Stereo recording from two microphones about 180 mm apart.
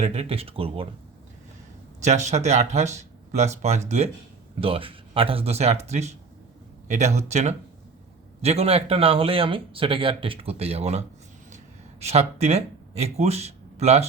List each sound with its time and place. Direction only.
0.0 s speech: 35° right (ahead or behind)
2.0 s speech: 40° right (ahead or behind)